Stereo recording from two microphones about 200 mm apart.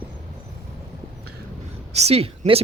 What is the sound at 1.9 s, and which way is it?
Speech, 30° right (ahead or behind).